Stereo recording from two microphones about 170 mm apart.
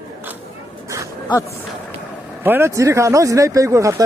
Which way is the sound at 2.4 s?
15° right (ahead or behind).